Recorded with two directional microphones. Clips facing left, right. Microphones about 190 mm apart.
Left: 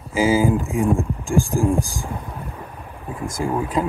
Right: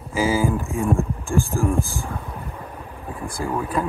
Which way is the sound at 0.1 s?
15° left (ahead or behind).